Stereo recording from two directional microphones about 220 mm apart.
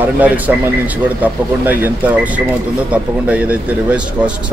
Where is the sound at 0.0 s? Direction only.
10° right (ahead or behind).